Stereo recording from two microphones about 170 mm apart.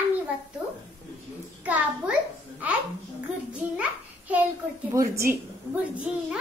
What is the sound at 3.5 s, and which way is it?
A child's voice, 10° right (ahead or behind).